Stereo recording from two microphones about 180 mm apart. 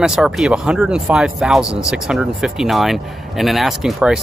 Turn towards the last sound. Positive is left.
turn(degrees=-5)  # may be behind; listen again after turning